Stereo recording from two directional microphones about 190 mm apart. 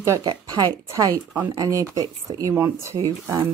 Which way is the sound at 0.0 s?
20° right (ahead or behind).